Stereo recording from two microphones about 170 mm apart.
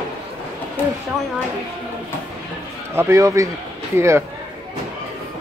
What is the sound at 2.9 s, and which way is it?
A man's voice, 15° right (ahead or behind).